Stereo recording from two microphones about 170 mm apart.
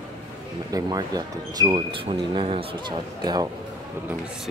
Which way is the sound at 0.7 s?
20° right (ahead or behind).